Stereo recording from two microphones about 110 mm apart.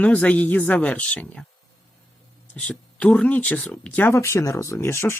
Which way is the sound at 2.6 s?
10° left (ahead or behind).